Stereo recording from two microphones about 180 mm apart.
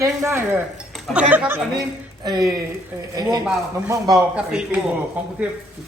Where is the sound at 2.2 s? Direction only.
20° right (ahead or behind).